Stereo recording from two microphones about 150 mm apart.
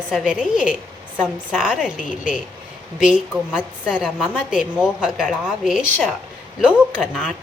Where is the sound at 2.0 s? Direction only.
60° left (ahead or behind).